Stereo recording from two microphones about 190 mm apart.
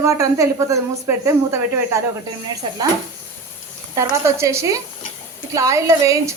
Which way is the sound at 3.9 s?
15° right (ahead or behind).